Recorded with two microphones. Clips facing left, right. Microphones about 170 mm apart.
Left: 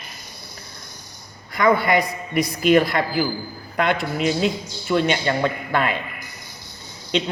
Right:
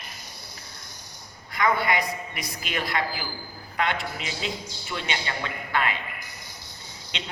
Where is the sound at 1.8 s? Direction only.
45° left (ahead or behind).